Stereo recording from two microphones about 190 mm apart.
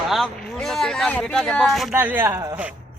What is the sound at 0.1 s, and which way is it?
Speech, centre (ahead or behind).